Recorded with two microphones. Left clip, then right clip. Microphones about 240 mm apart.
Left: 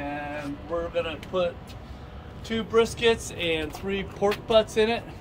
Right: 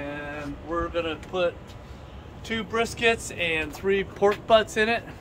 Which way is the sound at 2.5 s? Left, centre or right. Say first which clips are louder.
Left 4 dB; centre.